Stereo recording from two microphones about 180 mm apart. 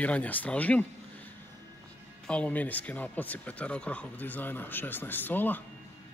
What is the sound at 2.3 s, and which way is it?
Speech, 5° left (ahead or behind).